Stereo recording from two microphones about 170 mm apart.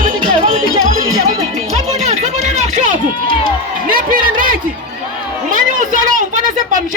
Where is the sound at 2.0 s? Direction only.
40° right (ahead or behind).